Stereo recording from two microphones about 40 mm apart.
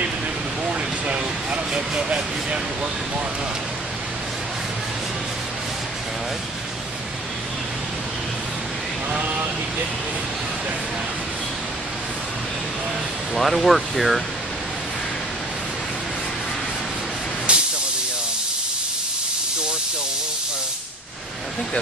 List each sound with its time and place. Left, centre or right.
0.7 s a sound: right
1.7 s speech: right
9.2 s speech: right
13.3 s speech: centre
17.5 s hiss: right